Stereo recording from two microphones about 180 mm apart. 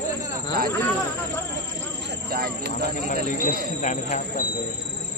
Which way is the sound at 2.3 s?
55° right (ahead or behind).